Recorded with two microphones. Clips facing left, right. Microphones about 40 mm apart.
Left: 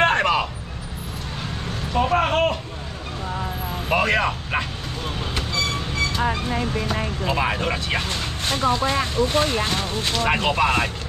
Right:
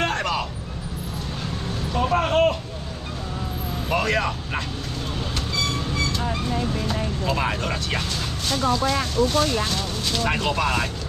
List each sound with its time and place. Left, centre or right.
0.0 s vehicle: left
2.0 s vehicle: centre
3.9 s speech: centre
6.2 s speech: left
8.1 s speech: left
10.1 s speech: centre